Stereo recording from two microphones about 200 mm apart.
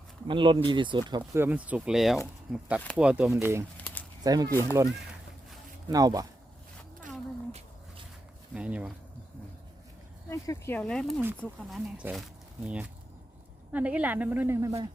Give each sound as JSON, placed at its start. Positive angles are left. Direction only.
{"t": 0.3, "sound": "speech", "side_deg": -25}
{"t": 3.8, "sound": "a sound", "side_deg": 5}
{"t": 4.2, "sound": "speech", "side_deg": -20}
{"t": 5.9, "sound": "speech", "side_deg": -20}
{"t": 8.5, "sound": "speech", "side_deg": -5}
{"t": 10.2, "sound": "speech", "side_deg": 15}
{"t": 13.7, "sound": "speech", "side_deg": -5}